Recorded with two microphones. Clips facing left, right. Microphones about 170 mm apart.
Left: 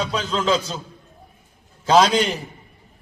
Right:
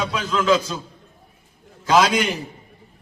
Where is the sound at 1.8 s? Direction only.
30° left (ahead or behind).